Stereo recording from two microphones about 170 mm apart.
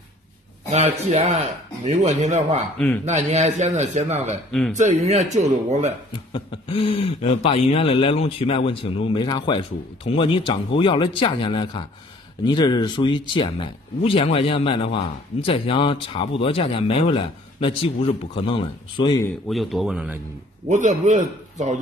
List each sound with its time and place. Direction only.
0.7 s a man's voice: 40° right (ahead or behind)
4.5 s speech: centre (ahead or behind)
4.7 s a man's voice: 45° right (ahead or behind)
6.1 s a man's voice: 30° left (ahead or behind)
19.4 s speech: centre (ahead or behind)
20.6 s a man's voice: 45° right (ahead or behind)